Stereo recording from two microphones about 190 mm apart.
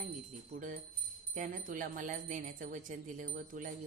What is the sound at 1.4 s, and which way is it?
Speech, 45° right (ahead or behind).